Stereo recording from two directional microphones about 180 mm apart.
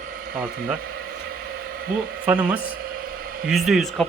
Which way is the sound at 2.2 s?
5° right (ahead or behind).